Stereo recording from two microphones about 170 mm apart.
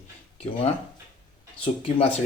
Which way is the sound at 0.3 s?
35° left (ahead or behind).